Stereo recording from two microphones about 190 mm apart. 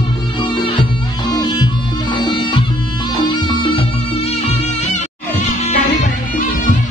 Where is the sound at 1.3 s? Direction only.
20° left (ahead or behind); by 5.8 s 40° left (ahead or behind).